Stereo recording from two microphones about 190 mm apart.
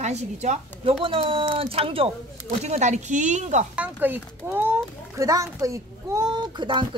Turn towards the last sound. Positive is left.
turn(degrees=-25)  # may be behind; listen again after turning